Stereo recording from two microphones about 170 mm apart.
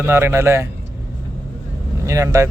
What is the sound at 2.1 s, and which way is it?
Speech, 15° right (ahead or behind).